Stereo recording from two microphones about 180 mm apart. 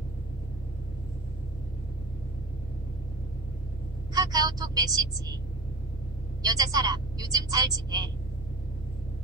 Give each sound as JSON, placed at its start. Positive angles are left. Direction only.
{"t": 4.1, "sound": "speech", "side_deg": -20}
{"t": 6.4, "sound": "a woman's voice", "side_deg": -20}